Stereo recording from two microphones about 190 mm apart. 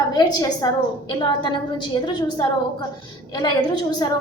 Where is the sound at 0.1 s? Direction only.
20° left (ahead or behind).